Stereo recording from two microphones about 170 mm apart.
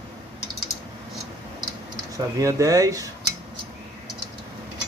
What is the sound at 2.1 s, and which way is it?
Speech, 20° right (ahead or behind).